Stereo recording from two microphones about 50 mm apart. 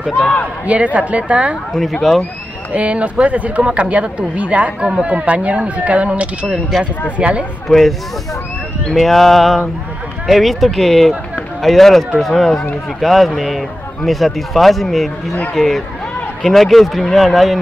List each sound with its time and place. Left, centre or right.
0.1 s speech: left
0.9 s speech: right
1.7 s speech: centre
2.7 s speech: right
7.6 s speech: centre